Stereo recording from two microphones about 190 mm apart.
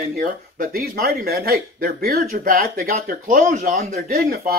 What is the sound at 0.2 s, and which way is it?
Speech, 50° right (ahead or behind).